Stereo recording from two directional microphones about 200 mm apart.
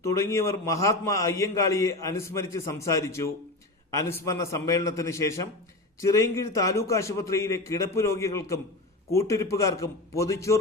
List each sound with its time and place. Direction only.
0.0 s a man's voice: 15° left (ahead or behind)